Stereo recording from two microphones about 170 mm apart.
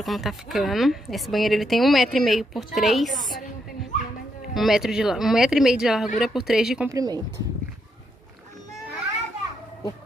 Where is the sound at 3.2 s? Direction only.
Centre (ahead or behind).